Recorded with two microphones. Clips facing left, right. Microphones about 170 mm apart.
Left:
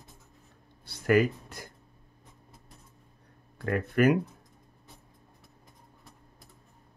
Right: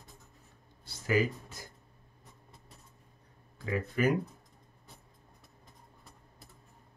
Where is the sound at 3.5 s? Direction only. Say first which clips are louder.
Left 6 dB; 60° left (ahead or behind).